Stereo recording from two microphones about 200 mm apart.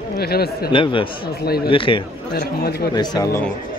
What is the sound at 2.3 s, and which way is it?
Speech, 55° left (ahead or behind).